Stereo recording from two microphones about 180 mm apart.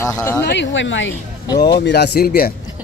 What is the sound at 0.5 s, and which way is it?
Speech, 85° left.